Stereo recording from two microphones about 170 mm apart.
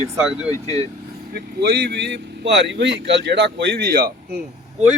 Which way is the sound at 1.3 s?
70° right (ahead or behind).